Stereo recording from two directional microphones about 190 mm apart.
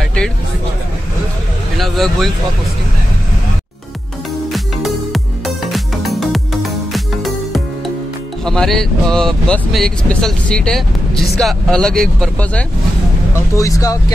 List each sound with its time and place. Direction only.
1.8 s speech: centre (ahead or behind)
4.5 s music: centre (ahead or behind)
8.5 s speech: centre (ahead or behind)
13.6 s speech: 15° left (ahead or behind)